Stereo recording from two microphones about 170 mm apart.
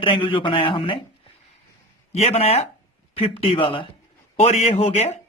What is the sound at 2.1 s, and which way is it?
A man's voice, 35° left (ahead or behind).